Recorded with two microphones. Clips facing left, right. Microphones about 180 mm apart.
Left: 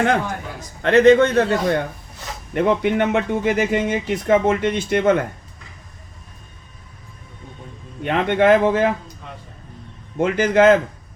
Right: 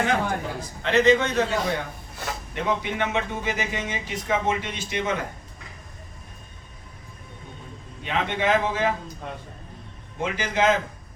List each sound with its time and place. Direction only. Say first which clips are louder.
0.8 s speech: left 7 dB; 55° left (ahead or behind)
8.0 s speech: left 9 dB; 55° left (ahead or behind)
10.2 s speech: left 9 dB; 55° left (ahead or behind)